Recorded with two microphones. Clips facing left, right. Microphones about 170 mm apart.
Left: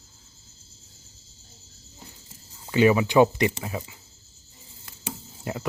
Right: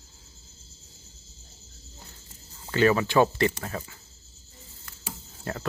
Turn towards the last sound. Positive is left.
turn(degrees=15)  # may be behind; listen again after turning